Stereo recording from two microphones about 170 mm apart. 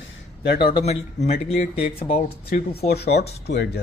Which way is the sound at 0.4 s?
70° left (ahead or behind).